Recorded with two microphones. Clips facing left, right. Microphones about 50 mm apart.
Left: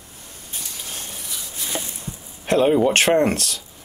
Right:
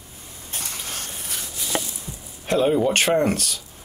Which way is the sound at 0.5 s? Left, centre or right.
Right.